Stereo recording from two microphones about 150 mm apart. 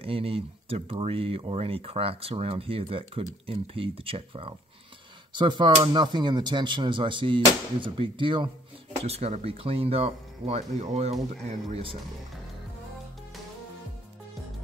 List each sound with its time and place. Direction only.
0.0 s speech: 40° right (ahead or behind)
9.0 s speech: 45° right (ahead or behind)